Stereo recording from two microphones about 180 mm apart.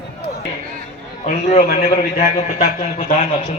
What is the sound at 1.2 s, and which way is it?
Speech, 35° left (ahead or behind).